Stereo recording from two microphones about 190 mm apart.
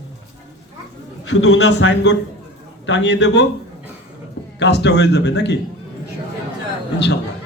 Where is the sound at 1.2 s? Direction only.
65° left (ahead or behind).